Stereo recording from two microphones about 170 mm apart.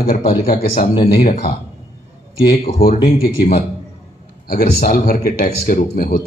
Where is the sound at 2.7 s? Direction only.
60° left (ahead or behind).